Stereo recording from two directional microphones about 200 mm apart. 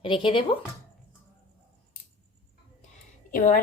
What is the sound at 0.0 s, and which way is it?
Speech, 25° left (ahead or behind).